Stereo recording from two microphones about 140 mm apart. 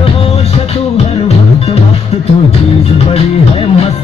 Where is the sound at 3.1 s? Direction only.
45° left (ahead or behind).